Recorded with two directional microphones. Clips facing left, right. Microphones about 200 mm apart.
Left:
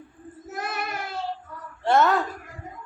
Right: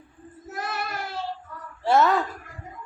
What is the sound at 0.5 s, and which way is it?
Child singing, 20° left (ahead or behind).